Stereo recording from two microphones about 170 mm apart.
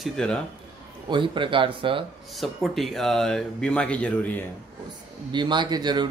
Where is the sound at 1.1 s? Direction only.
30° right (ahead or behind).